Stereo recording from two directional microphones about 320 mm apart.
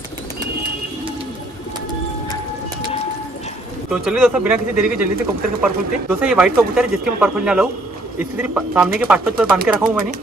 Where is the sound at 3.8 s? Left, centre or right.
Centre.